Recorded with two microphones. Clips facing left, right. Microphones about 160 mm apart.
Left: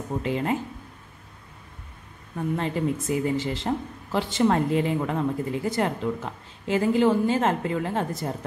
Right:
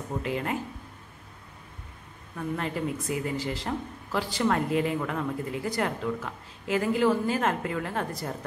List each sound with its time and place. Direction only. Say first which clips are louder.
0.2 s speech: left 5 dB; 25° left (ahead or behind)
2.3 s speech: left 4 dB; 25° left (ahead or behind)